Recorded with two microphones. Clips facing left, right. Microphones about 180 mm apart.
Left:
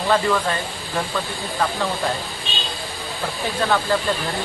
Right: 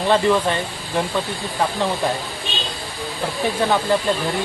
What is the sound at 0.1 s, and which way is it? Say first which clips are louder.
Speech: right 3 dB; 20° right (ahead or behind).